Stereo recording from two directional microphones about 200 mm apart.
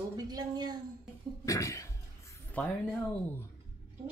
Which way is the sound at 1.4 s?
15° left (ahead or behind).